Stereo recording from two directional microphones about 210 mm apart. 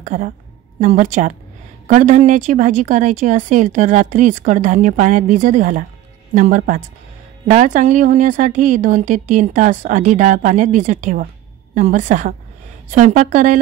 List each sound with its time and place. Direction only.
0.0 s a woman's voice: 40° right (ahead or behind)